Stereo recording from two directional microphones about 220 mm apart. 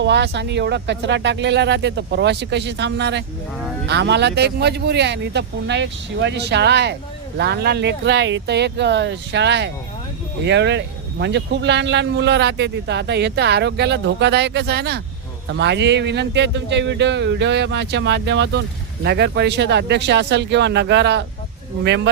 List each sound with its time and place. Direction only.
0.0 s speech: 55° right (ahead or behind)